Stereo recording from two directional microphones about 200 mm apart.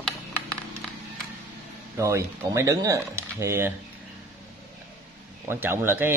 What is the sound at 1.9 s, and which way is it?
A man's voice, 15° right (ahead or behind).